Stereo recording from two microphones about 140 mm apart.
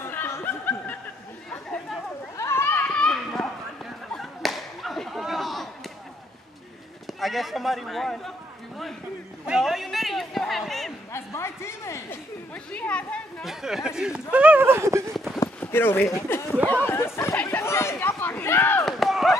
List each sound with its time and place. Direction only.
0.0 s snicker: 15° left (ahead or behind)
2.3 s children playing: 20° left (ahead or behind)
4.1 s whip: centre (ahead or behind)
7.1 s a man's voice: centre (ahead or behind)
9.5 s a man's voice: centre (ahead or behind)
11.1 s speech: 20° left (ahead or behind)
12.7 s speech: 10° left (ahead or behind); by 15.0 s 20° right (ahead or behind)
15.6 s speech: 15° left (ahead or behind)
18.9 s run: centre (ahead or behind)